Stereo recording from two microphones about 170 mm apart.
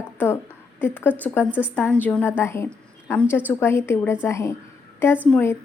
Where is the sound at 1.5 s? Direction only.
10° right (ahead or behind).